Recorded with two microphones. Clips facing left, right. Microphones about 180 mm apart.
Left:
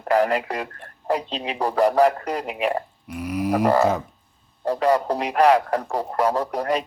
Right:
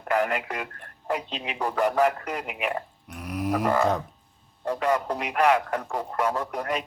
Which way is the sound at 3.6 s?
35° left (ahead or behind).